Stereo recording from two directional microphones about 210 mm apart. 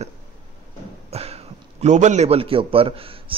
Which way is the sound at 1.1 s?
30° right (ahead or behind).